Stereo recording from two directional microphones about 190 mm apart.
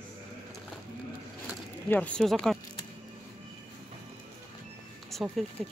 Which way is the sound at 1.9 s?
5° left (ahead or behind).